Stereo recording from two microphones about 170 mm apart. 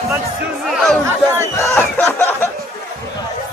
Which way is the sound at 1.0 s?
15° right (ahead or behind).